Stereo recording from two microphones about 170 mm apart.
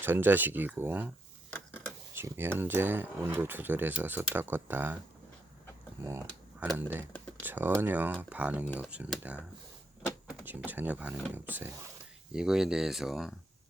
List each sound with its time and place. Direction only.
0.0 s speech: 10° right (ahead or behind)
1.5 s a sound: 10° left (ahead or behind)
2.1 s speech: 15° right (ahead or behind)
6.0 s speech: 15° right (ahead or behind)
10.4 s speech: 10° right (ahead or behind)